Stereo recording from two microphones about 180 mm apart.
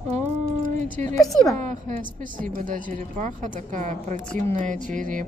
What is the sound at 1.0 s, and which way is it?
Speech, 40° right (ahead or behind).